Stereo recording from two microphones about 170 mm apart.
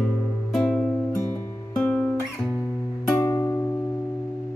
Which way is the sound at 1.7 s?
5° left (ahead or behind).